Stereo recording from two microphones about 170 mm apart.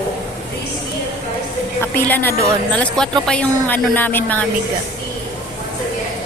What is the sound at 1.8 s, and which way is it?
Speech, 10° left (ahead or behind).